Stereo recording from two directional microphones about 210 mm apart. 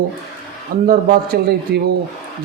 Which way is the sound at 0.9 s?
45° right (ahead or behind).